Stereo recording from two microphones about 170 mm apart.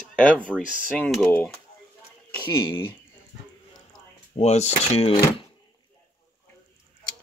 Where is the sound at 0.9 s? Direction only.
5° left (ahead or behind).